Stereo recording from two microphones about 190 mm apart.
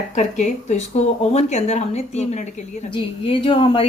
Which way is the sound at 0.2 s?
40° left (ahead or behind).